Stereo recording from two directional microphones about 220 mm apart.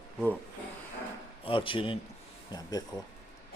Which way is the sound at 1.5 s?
25° left (ahead or behind).